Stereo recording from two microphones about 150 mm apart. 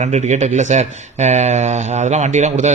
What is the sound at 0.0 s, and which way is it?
Speech, 50° right (ahead or behind).